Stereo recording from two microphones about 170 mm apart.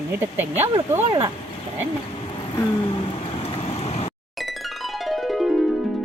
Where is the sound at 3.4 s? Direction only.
35° left (ahead or behind).